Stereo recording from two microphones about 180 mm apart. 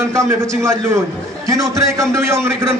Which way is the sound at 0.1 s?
15° right (ahead or behind).